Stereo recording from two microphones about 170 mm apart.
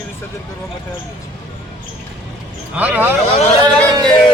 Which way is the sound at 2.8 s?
10° right (ahead or behind).